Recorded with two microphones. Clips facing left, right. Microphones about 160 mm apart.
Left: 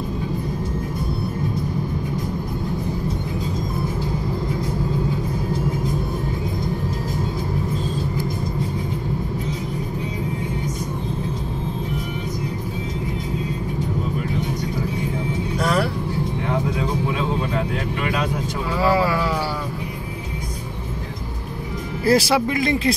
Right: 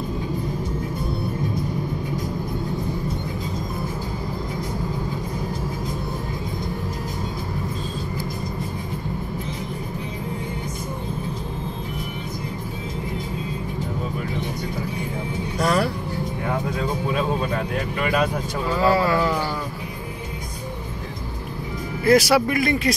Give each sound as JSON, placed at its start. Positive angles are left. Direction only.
{"t": 15.6, "sound": "vehicle", "side_deg": 0}
{"t": 18.9, "sound": "a sound", "side_deg": 10}
{"t": 22.0, "sound": "speech", "side_deg": 30}